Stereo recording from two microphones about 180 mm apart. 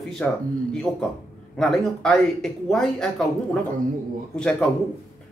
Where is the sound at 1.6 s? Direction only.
5° left (ahead or behind).